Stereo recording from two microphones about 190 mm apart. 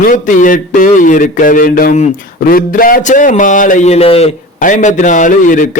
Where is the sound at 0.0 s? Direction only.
40° left (ahead or behind).